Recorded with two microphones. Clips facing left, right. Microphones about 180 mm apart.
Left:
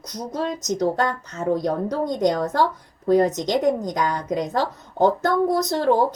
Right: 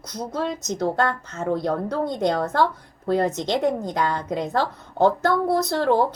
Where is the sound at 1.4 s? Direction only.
15° left (ahead or behind).